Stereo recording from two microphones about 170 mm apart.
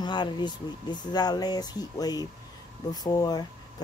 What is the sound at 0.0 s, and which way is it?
Speech, 25° left (ahead or behind).